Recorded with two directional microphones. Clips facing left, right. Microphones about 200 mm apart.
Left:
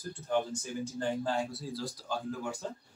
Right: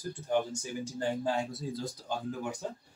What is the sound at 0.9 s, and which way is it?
Speech, 15° right (ahead or behind).